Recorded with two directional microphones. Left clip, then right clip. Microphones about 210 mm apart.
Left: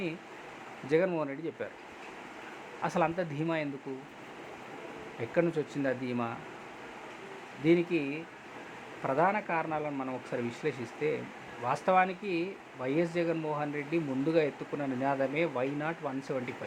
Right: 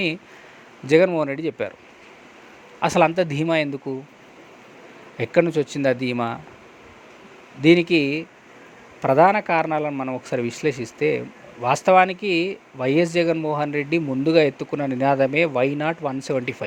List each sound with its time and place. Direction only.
0.9 s speech: 35° right (ahead or behind)
2.8 s speech: 35° right (ahead or behind)
5.2 s speech: 40° right (ahead or behind)
7.6 s speech: 40° right (ahead or behind)